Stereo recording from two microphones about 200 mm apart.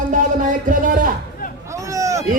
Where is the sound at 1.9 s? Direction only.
15° right (ahead or behind).